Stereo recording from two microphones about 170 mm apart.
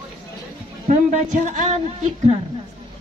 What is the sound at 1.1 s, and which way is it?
Speech, 45° right (ahead or behind).